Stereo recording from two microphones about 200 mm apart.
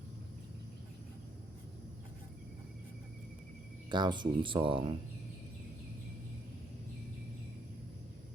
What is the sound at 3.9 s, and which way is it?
Speech, 20° right (ahead or behind).